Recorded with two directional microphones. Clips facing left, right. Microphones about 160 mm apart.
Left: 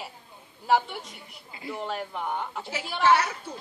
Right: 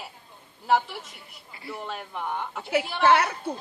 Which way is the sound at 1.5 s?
20° left (ahead or behind).